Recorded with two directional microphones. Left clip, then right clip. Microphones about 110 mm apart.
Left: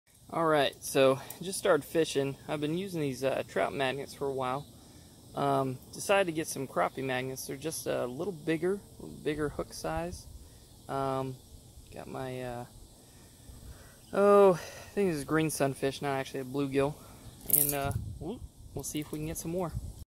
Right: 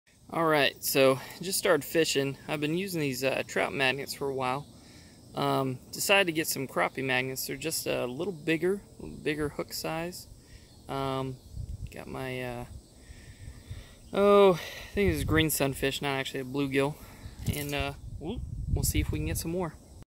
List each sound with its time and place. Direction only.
0.3 s speech: 35° right (ahead or behind)
14.1 s speech: 15° right (ahead or behind)
18.8 s speech: 40° right (ahead or behind)
19.3 s speech: 30° right (ahead or behind)